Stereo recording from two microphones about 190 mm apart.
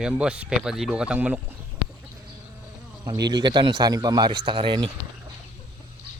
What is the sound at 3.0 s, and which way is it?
A man's voice, 20° right (ahead or behind).